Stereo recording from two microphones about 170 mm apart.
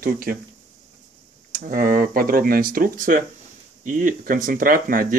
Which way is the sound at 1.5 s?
55° right (ahead or behind).